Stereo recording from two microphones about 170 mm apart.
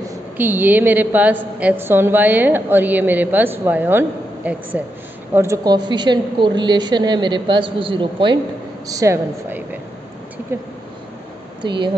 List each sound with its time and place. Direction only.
0.0 s a woman's voice: 15° right (ahead or behind)
11.6 s a woman's voice: 25° right (ahead or behind)